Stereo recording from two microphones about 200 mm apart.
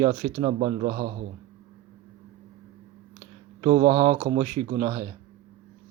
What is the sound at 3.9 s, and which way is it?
Speech, 20° right (ahead or behind).